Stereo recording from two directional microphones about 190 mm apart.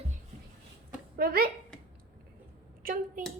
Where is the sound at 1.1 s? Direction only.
50° right (ahead or behind).